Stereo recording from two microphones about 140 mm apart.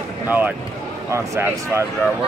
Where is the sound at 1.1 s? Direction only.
20° right (ahead or behind).